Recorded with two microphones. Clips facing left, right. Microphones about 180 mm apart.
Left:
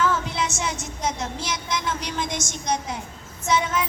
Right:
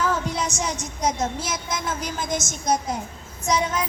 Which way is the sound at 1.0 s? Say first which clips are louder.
Right 4 dB; 45° right (ahead or behind).